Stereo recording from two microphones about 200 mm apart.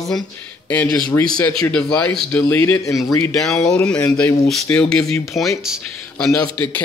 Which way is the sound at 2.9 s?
Centre (ahead or behind).